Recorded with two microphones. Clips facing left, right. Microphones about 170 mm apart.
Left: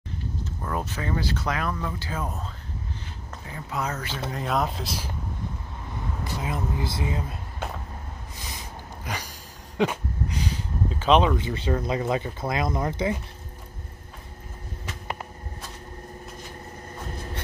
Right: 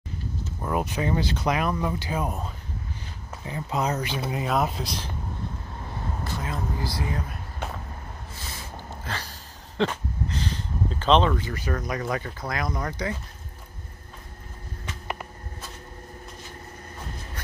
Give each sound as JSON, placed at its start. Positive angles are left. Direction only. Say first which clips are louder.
{"t": 0.6, "sound": "speech", "louder": "right 5 dB", "side_deg": -15}
{"t": 6.4, "sound": "speech", "louder": "left 3 dB", "side_deg": 20}
{"t": 8.5, "sound": "a sound", "louder": "right 1 dB", "side_deg": 15}
{"t": 11.3, "sound": "speech", "louder": "left 3 dB", "side_deg": 25}